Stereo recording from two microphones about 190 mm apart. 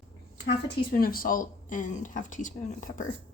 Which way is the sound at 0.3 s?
55° left (ahead or behind).